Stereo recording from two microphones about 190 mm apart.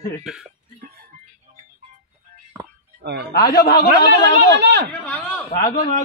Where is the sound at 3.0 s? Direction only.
55° right (ahead or behind).